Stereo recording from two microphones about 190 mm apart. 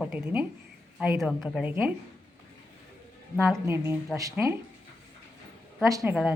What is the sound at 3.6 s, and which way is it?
Speech, 10° right (ahead or behind).